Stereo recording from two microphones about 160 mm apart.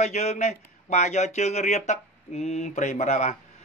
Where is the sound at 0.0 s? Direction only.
45° left (ahead or behind).